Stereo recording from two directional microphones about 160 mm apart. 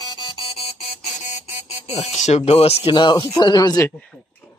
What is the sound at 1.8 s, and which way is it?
Speech, 40° left (ahead or behind).